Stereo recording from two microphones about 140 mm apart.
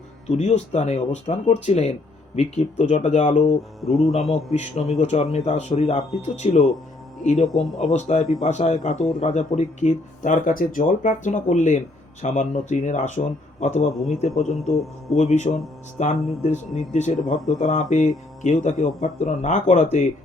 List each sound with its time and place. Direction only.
0.3 s speech: 55° left (ahead or behind)
3.8 s speech: centre (ahead or behind)
4.9 s speech: 55° left (ahead or behind)
7.4 s speech: centre (ahead or behind)
7.9 s speech: 60° left (ahead or behind)
13.8 s speech: centre (ahead or behind)
16.0 s speech: 60° left (ahead or behind)
17.3 s speech: centre (ahead or behind)
17.6 s speech: 65° left (ahead or behind)